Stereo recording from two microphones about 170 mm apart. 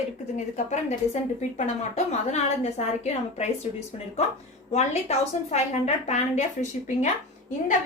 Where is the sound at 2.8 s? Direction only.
40° left (ahead or behind).